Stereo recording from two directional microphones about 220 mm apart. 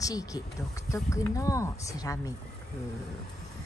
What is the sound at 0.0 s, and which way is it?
Speech, 15° left (ahead or behind).